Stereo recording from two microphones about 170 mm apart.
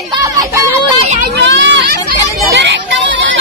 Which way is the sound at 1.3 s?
90° right.